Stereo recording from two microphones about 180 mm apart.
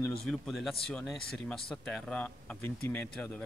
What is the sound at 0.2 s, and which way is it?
Speech, centre (ahead or behind).